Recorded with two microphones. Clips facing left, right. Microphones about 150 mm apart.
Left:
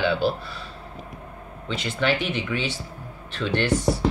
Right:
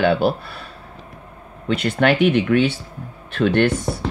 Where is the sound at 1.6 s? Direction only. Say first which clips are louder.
Right 7 dB; 55° right (ahead or behind).